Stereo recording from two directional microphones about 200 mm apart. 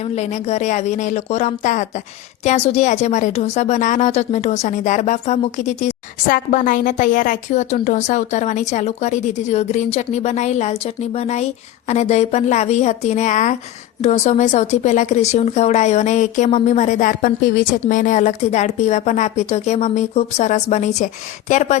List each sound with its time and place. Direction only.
0.2 s speech: 35° left (ahead or behind)